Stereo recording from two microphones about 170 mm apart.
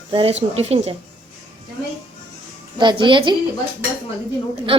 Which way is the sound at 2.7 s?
30° right (ahead or behind).